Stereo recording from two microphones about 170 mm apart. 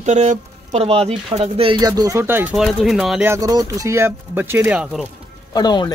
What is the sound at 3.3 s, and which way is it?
Speech, 20° right (ahead or behind).